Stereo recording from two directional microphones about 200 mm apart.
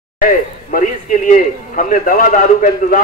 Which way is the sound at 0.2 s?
40° left (ahead or behind).